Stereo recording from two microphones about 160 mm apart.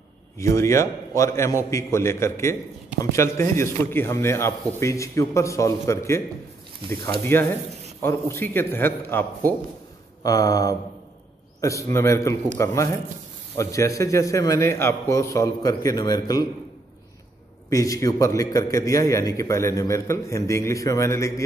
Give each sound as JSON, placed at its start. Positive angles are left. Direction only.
{"t": 0.4, "sound": "speech", "side_deg": 20}
{"t": 7.3, "sound": "speech", "side_deg": 15}
{"t": 10.2, "sound": "a man's voice", "side_deg": 25}
{"t": 17.6, "sound": "a man's voice", "side_deg": 20}